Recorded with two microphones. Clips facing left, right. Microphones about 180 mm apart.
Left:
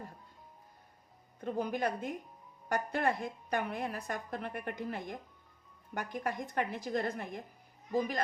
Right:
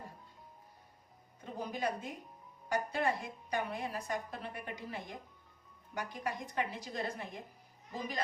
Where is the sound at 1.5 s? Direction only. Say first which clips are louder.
Left 3 dB; 60° left (ahead or behind).